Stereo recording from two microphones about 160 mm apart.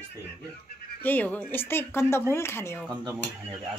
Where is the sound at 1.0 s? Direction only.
10° left (ahead or behind).